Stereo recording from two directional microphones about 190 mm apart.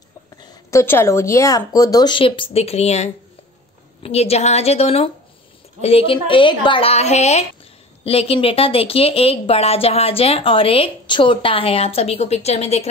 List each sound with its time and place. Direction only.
0.4 s a woman's voice: 20° left (ahead or behind); by 12.8 s 35° left (ahead or behind)